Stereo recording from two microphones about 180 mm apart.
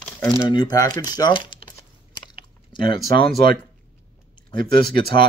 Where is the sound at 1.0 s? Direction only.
20° left (ahead or behind).